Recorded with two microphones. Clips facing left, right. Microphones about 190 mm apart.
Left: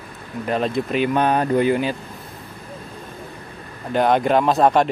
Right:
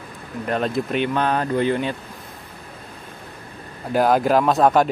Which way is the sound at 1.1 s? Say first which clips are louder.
Left 3 dB; 15° left (ahead or behind).